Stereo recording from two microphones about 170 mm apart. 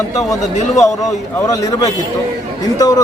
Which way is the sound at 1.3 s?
20° left (ahead or behind).